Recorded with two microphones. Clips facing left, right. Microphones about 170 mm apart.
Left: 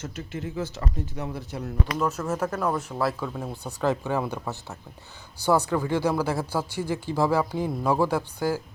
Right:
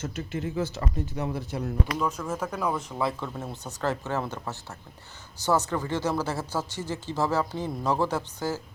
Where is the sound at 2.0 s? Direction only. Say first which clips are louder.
Left 3 dB; 5° left (ahead or behind).